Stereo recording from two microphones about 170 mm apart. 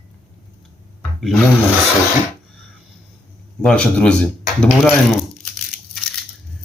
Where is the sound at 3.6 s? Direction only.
5° left (ahead or behind).